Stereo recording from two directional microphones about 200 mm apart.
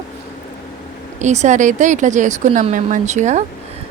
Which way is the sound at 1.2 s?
35° right (ahead or behind).